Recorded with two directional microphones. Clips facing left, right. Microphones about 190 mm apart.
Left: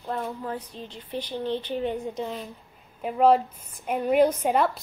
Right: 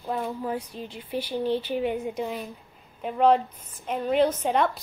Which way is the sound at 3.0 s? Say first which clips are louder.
Left 1 dB; 5° left (ahead or behind).